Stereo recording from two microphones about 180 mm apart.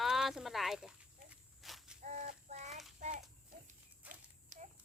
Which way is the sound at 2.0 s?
45° right (ahead or behind).